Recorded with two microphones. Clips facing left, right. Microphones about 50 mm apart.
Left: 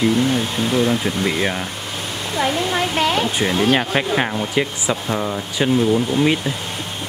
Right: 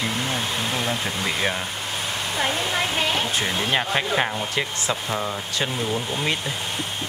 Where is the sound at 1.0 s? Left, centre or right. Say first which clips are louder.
Left 5 dB; centre.